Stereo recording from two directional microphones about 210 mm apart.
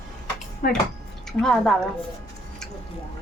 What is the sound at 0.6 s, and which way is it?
Speech, 40° left (ahead or behind).